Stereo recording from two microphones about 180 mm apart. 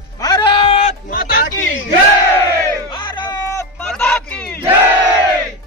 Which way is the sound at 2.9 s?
25° left (ahead or behind).